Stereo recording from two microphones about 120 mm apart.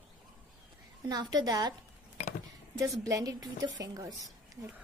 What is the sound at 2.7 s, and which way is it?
A woman's voice, 30° right (ahead or behind).